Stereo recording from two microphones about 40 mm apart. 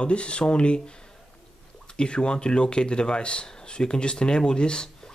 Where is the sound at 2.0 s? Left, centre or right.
Left.